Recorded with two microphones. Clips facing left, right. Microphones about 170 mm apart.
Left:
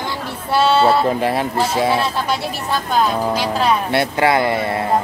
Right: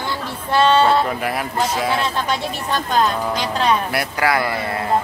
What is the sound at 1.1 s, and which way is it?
Speech, 30° left (ahead or behind).